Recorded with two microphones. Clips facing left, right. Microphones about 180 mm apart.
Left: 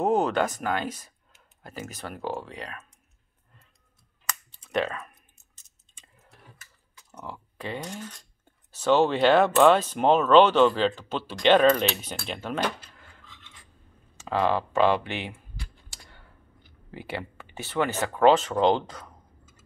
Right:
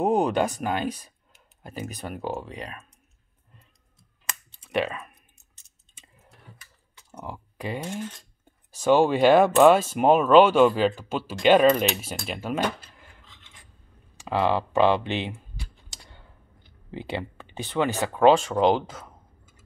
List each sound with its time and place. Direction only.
0.0 s speech: 15° right (ahead or behind)
4.6 s speech: 10° right (ahead or behind)
7.2 s speech: 10° right (ahead or behind)
14.1 s computer keyboard: 15° right (ahead or behind)
16.9 s speech: 20° right (ahead or behind)